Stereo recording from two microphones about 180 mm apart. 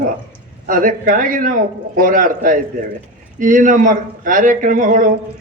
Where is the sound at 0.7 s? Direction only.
50° right (ahead or behind).